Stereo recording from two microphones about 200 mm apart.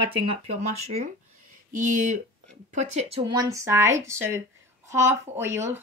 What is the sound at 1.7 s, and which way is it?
A woman's voice, 40° right (ahead or behind).